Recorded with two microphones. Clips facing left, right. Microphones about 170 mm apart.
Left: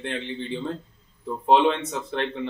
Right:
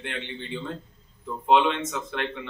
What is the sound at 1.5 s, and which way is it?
A man's voice, 30° left (ahead or behind).